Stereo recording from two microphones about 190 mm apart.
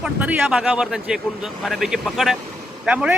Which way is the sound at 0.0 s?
5° right (ahead or behind).